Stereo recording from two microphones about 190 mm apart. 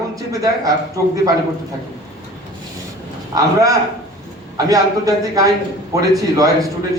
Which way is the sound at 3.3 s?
15° right (ahead or behind).